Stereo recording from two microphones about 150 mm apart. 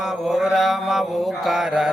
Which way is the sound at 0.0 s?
5° right (ahead or behind).